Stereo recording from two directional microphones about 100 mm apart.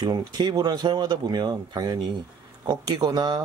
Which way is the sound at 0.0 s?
45° right (ahead or behind).